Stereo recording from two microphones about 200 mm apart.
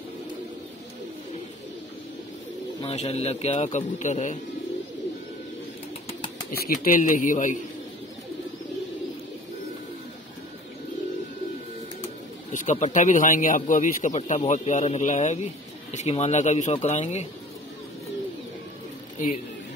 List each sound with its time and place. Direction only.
2.8 s speech: 30° left (ahead or behind)
6.5 s speech: 45° left (ahead or behind)
12.5 s speech: 35° left (ahead or behind)